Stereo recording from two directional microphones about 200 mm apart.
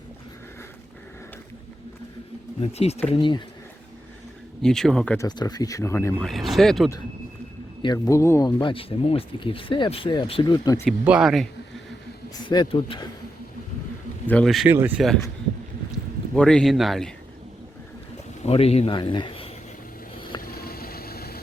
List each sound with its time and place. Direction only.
2.6 s speech: 30° left (ahead or behind)
4.6 s speech: centre (ahead or behind)
5.1 s speech: 20° left (ahead or behind)
6.2 s speech: centre (ahead or behind)
7.8 s speech: 20° left (ahead or behind)
10.8 s speech: 5° right (ahead or behind)
12.3 s speech: 20° left (ahead or behind)
14.3 s speech: 5° left (ahead or behind)
18.4 s a man's voice: 30° left (ahead or behind)
20.4 s vehicle: 50° left (ahead or behind)